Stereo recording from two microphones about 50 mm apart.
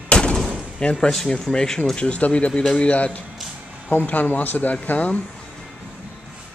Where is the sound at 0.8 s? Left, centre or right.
Centre.